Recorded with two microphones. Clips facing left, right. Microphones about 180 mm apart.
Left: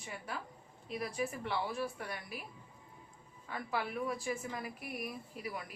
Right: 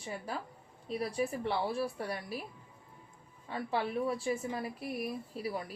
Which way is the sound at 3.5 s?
30° right (ahead or behind).